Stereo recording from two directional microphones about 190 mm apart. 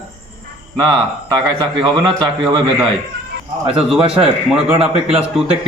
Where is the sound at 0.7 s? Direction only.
20° right (ahead or behind).